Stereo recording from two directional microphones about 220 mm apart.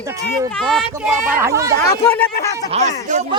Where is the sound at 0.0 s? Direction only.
15° right (ahead or behind).